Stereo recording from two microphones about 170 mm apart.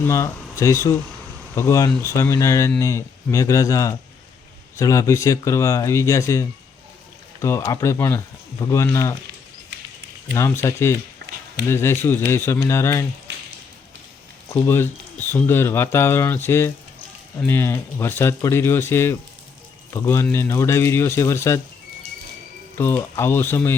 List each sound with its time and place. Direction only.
0.0 s speech: 15° left (ahead or behind)
10.3 s speech: 15° left (ahead or behind)
14.5 s speech: 15° left (ahead or behind)
22.8 s speech: 15° left (ahead or behind)